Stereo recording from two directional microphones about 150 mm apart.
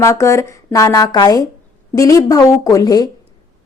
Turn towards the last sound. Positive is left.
turn(degrees=25)  # may be behind; listen again after turning